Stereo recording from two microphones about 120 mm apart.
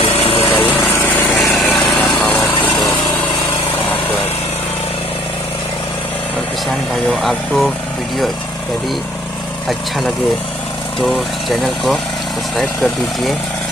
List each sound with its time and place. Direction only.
0.0 s vehicle: 50° left (ahead or behind)
0.7 s light engine: 15° left (ahead or behind)
1.4 s vehicle: centre (ahead or behind)
2.1 s lawn mower: 15° left (ahead or behind)
7.1 s speech: centre (ahead or behind)
9.7 s speech: centre (ahead or behind)